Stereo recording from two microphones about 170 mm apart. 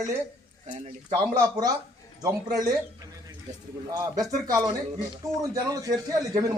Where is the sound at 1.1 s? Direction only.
25° right (ahead or behind).